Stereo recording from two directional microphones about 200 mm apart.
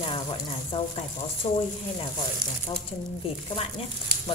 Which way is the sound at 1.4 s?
35° left (ahead or behind).